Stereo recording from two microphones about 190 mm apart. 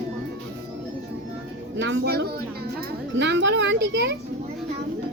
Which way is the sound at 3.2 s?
75° right (ahead or behind).